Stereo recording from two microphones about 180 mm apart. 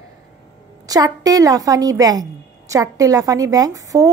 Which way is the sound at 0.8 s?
20° right (ahead or behind).